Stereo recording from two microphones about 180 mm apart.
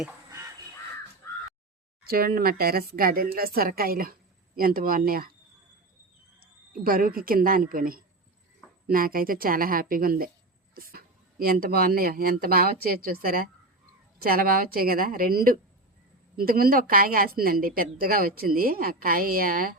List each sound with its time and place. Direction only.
2.0 s speech: 55° right (ahead or behind)
6.4 s speech: 50° right (ahead or behind)